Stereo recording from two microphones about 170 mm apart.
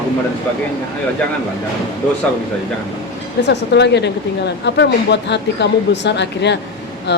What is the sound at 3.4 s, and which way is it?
Speech, 90° left.